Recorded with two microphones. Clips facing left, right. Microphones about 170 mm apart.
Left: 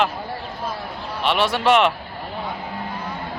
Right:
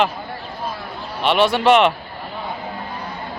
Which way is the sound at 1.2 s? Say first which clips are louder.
Right 4 dB; centre (ahead or behind).